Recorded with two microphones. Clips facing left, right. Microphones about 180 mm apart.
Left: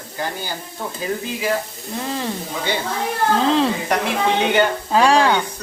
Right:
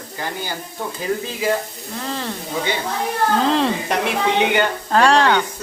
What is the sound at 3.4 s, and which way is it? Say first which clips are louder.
Speech: left 1 dB; centre (ahead or behind).